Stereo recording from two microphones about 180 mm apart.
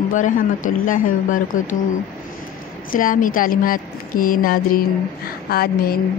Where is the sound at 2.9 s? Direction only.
50° left (ahead or behind).